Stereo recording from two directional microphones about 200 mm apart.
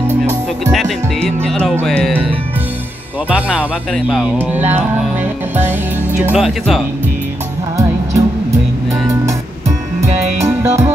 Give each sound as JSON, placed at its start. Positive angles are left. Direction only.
{"t": 1.2, "sound": "music", "side_deg": 5}
{"t": 3.3, "sound": "speech", "side_deg": -5}
{"t": 6.2, "sound": "music", "side_deg": -5}
{"t": 7.7, "sound": "music", "side_deg": -15}
{"t": 10.0, "sound": "music", "side_deg": -35}
{"t": 10.4, "sound": "music", "side_deg": -15}